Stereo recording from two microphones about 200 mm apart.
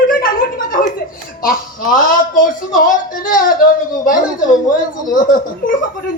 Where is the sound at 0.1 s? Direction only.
45° left (ahead or behind).